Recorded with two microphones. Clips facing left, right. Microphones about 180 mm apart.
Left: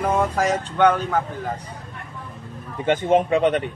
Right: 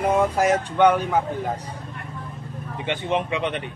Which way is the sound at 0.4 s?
10° right (ahead or behind).